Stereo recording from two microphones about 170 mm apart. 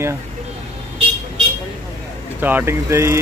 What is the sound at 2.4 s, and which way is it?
Speech, 10° right (ahead or behind).